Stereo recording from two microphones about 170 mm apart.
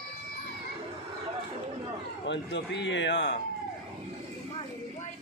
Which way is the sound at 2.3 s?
90° left.